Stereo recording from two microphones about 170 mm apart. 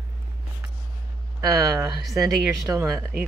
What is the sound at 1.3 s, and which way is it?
Speech, 20° right (ahead or behind).